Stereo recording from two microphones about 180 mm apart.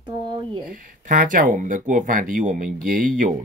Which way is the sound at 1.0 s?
45° right (ahead or behind).